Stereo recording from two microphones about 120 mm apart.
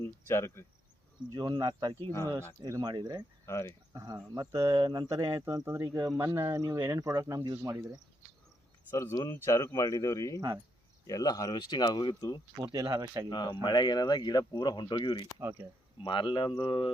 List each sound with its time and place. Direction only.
0.0 s cricket: 25° left (ahead or behind)
1.3 s speech: 30° right (ahead or behind)
2.0 s speech: 20° left (ahead or behind)
2.6 s speech: 30° right (ahead or behind)
3.4 s speech: 25° left (ahead or behind)
3.9 s speech: 35° right (ahead or behind)
8.9 s speech: 30° left (ahead or behind)
12.7 s speech: 35° right (ahead or behind)
13.3 s speech: 40° left (ahead or behind)
15.4 s speech: 20° right (ahead or behind)
16.0 s speech: 45° left (ahead or behind)